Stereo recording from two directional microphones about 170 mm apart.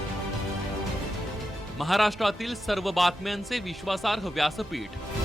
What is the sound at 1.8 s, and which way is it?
A man's voice, centre (ahead or behind).